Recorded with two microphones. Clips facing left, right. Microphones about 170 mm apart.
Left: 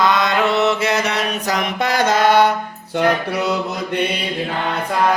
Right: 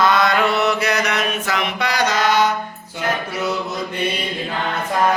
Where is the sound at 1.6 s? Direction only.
50° left (ahead or behind).